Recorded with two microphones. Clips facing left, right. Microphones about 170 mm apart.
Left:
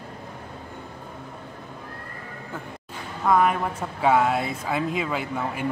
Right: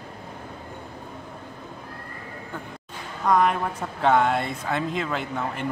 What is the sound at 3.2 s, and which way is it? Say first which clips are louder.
Speech: even; 5° left (ahead or behind).